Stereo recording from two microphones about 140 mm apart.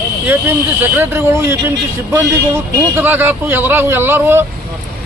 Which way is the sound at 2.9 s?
15° right (ahead or behind).